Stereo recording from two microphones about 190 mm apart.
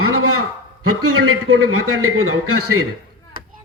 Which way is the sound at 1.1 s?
90° right.